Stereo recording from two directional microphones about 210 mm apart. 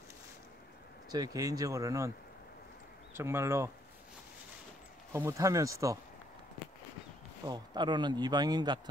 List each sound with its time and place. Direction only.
1.1 s speech: 15° right (ahead or behind)
3.2 s speech: 10° right (ahead or behind)
5.1 s speech: 15° right (ahead or behind)
7.4 s speech: 20° right (ahead or behind)